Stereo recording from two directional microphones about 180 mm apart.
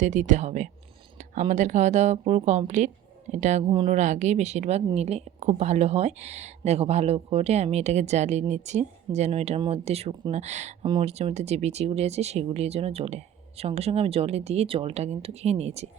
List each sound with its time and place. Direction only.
0.0 s speech: 40° right (ahead or behind)
3.7 s speech: 25° right (ahead or behind)
3.9 s speech: 40° right (ahead or behind)